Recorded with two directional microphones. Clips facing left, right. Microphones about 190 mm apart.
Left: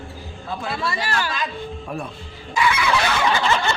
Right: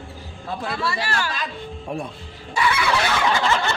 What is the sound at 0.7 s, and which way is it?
Speech, 20° left (ahead or behind).